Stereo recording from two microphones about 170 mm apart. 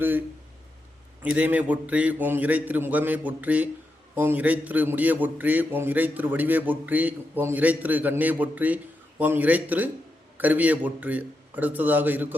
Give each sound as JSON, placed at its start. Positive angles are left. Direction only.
{"t": 1.2, "sound": "a man's voice", "side_deg": -10}